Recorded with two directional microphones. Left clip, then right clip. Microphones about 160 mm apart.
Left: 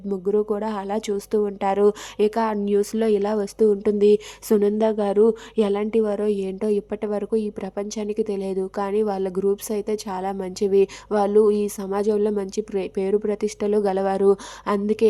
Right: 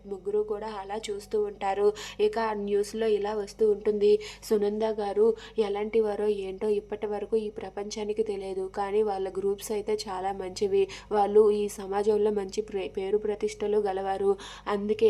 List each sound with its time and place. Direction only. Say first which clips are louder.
0.3 s speech: left 7 dB; 40° left (ahead or behind)